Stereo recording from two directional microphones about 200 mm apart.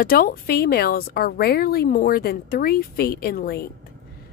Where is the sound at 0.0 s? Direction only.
45° left (ahead or behind).